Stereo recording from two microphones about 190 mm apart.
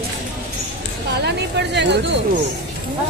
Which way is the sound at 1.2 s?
65° right (ahead or behind).